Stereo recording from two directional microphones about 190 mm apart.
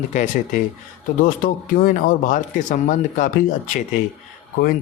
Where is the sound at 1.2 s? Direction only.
50° left (ahead or behind).